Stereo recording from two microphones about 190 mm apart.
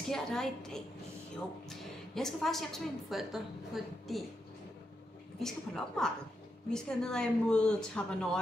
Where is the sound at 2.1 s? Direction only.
Centre (ahead or behind).